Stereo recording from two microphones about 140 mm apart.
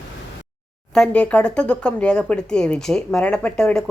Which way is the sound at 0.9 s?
5° left (ahead or behind).